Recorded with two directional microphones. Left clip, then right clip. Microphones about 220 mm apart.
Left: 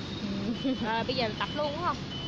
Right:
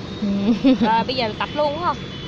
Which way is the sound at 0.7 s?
40° right (ahead or behind).